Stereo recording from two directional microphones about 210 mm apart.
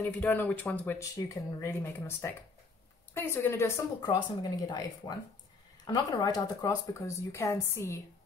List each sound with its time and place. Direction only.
0.2 s speech: 10° left (ahead or behind)